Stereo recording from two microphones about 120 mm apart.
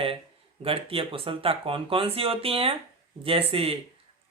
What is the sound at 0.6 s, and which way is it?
Speech, 50° right (ahead or behind).